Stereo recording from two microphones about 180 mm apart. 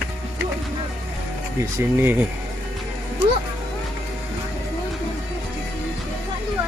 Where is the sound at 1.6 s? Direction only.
10° right (ahead or behind).